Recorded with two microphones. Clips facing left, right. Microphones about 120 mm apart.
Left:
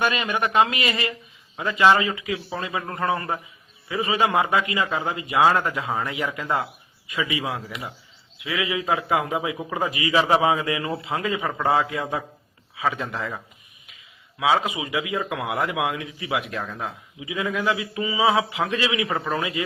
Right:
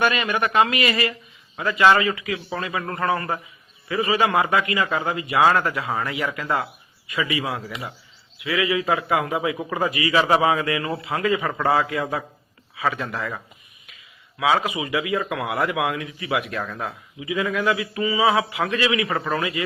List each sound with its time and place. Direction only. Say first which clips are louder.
0.6 s speech: right 2 dB; 20° left (ahead or behind)
4.4 s speech: right 1 dB; 20° left (ahead or behind)